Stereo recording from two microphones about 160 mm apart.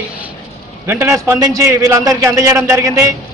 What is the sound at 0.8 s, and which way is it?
A man's voice, 20° right (ahead or behind).